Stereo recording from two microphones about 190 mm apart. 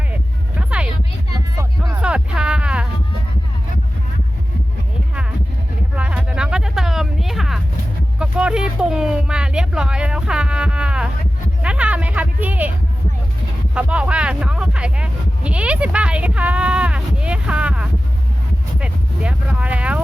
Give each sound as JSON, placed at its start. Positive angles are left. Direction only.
{"t": 1.5, "sound": "music", "side_deg": -15}
{"t": 2.0, "sound": "music", "side_deg": -5}
{"t": 6.0, "sound": "a sound", "side_deg": -5}
{"t": 13.7, "sound": "vehicle", "side_deg": -5}